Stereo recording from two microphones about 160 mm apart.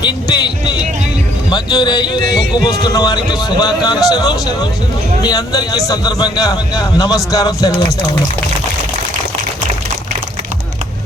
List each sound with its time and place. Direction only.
0.0 s a man's voice: 25° left (ahead or behind)